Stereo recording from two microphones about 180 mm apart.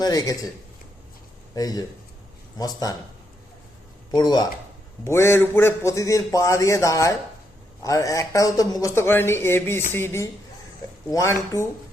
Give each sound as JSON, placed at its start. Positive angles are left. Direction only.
{"t": 0.0, "sound": "speech", "side_deg": 20}
{"t": 1.5, "sound": "speech", "side_deg": 20}
{"t": 4.1, "sound": "speech", "side_deg": 25}